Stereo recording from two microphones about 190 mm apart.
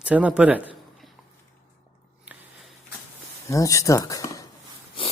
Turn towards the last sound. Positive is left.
turn(degrees=15)  # may be behind; listen again after turning